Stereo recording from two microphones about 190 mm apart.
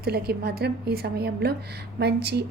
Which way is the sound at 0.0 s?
55° right (ahead or behind).